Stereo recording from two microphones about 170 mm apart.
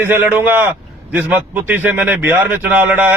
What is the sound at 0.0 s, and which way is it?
A man's voice, 15° right (ahead or behind).